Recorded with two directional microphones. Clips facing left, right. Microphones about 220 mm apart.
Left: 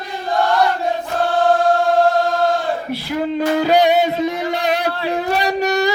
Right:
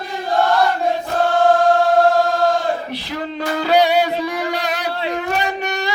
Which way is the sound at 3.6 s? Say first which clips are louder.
Even; 50° left (ahead or behind).